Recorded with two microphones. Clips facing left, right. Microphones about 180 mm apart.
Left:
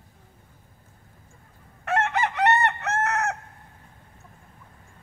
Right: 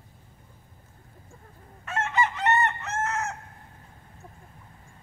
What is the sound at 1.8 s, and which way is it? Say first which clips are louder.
Chicken: left 3 dB; 70° left (ahead or behind).